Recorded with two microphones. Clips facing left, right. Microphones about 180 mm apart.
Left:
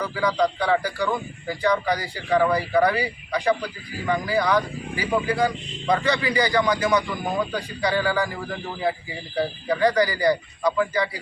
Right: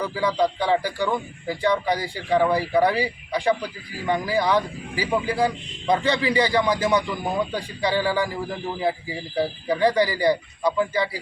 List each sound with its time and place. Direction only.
0.0 s a man's voice: 25° right (ahead or behind)